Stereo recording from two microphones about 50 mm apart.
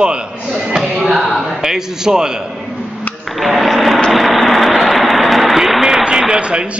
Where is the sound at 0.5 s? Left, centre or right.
Centre.